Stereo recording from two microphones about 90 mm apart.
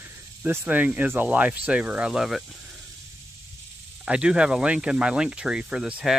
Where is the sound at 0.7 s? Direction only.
15° right (ahead or behind).